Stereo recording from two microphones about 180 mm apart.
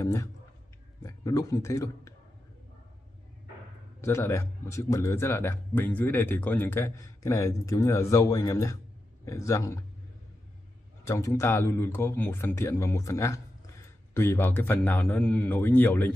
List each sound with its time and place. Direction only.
0.0 s a sound: 15° left (ahead or behind)
1.0 s speech: 20° left (ahead or behind)
4.0 s speech: 15° left (ahead or behind)
11.1 s speech: 15° left (ahead or behind)